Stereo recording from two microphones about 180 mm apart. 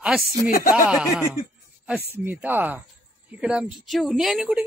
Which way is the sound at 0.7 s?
5° right (ahead or behind).